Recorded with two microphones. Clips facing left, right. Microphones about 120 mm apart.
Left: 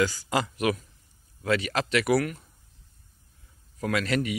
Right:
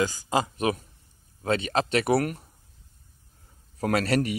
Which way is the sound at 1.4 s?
30° right (ahead or behind).